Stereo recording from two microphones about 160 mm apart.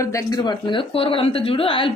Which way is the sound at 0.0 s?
20° left (ahead or behind).